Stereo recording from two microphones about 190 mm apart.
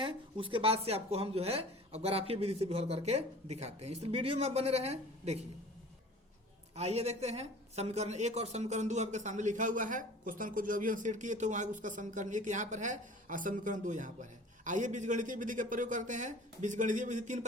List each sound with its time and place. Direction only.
0.0 s speech: 25° right (ahead or behind)
6.7 s speech: 35° right (ahead or behind)